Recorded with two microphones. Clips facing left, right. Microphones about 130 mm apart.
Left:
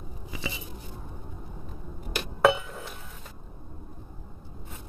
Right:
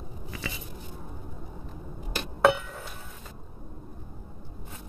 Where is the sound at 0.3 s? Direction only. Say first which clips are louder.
Left 2 dB; 10° left (ahead or behind).